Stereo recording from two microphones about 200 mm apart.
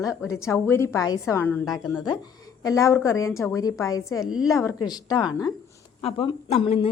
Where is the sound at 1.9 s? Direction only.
20° left (ahead or behind).